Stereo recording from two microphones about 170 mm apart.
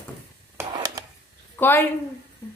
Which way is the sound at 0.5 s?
20° right (ahead or behind).